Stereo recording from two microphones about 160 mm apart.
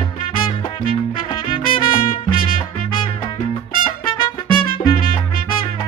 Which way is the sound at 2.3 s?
65° left (ahead or behind).